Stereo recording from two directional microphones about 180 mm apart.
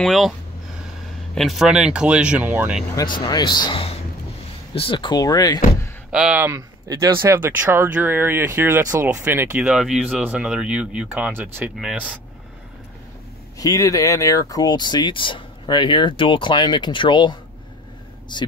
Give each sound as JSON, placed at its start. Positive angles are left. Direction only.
{"t": 0.0, "sound": "speech", "side_deg": 0}
{"t": 1.3, "sound": "speech", "side_deg": 0}
{"t": 3.0, "sound": "speech", "side_deg": 25}
{"t": 6.1, "sound": "speech", "side_deg": -5}
{"t": 13.6, "sound": "speech", "side_deg": 20}